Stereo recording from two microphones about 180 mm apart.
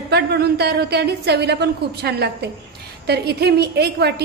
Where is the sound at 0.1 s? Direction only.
65° right (ahead or behind).